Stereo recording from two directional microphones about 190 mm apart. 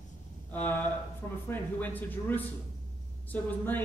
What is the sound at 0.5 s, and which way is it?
A man's voice, 10° left (ahead or behind).